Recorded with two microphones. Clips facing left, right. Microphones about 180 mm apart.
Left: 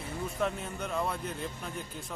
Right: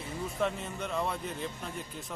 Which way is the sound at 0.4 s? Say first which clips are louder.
Right 1 dB; centre (ahead or behind).